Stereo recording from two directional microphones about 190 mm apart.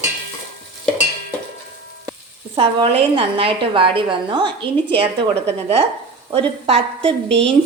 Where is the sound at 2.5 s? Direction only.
30° right (ahead or behind).